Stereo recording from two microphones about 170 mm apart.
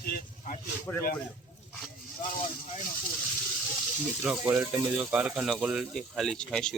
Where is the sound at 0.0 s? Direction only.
60° left (ahead or behind).